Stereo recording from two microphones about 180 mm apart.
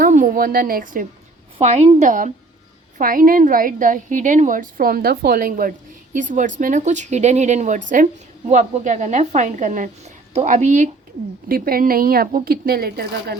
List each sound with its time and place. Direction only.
0.0 s a woman's voice: 50° right (ahead or behind)
11.4 s a woman's voice: 55° right (ahead or behind)